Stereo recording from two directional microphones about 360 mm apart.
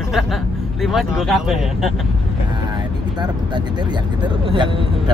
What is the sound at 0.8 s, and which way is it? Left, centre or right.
Speech, centre.